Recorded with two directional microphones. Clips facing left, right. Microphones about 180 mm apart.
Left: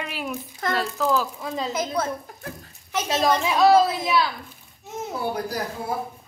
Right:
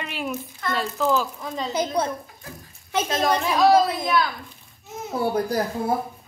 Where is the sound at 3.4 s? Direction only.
Centre (ahead or behind).